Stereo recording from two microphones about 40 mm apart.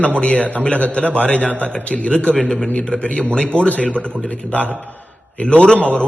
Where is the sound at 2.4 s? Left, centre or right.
Centre.